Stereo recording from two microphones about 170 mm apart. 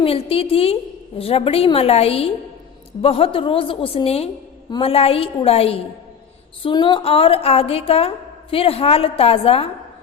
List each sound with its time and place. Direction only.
0.0 s a woman's voice: 35° left (ahead or behind)